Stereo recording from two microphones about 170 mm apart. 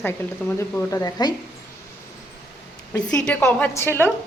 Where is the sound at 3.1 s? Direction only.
5° left (ahead or behind).